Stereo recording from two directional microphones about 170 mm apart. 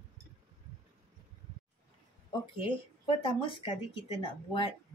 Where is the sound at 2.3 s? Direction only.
30° left (ahead or behind).